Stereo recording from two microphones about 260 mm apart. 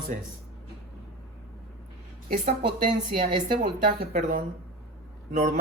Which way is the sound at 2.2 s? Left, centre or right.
Right.